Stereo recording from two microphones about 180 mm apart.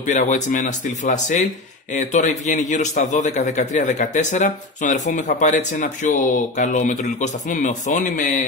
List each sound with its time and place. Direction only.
0.0 s a man's voice: 45° left (ahead or behind)